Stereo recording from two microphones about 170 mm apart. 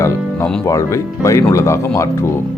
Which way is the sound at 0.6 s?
15° left (ahead or behind).